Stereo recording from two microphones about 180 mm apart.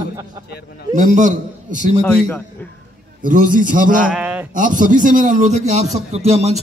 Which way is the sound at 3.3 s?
50° right (ahead or behind).